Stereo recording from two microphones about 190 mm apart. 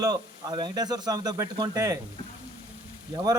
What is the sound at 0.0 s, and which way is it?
Speech, 20° right (ahead or behind).